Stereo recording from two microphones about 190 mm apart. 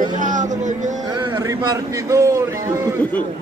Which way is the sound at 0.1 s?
40° right (ahead or behind).